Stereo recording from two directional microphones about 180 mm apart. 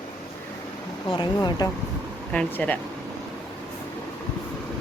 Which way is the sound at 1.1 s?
25° left (ahead or behind).